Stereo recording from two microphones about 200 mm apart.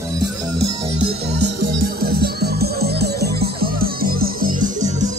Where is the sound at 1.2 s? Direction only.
55° right (ahead or behind).